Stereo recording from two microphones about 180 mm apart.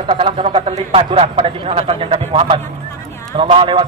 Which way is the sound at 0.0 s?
30° right (ahead or behind).